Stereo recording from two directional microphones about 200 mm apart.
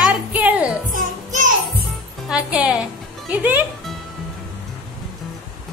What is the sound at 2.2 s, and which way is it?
Speech, 5° right (ahead or behind).